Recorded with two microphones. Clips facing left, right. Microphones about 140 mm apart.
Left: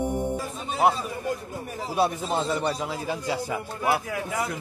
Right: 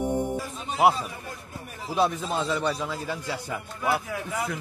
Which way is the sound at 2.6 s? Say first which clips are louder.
Left 1 dB; 15° left (ahead or behind).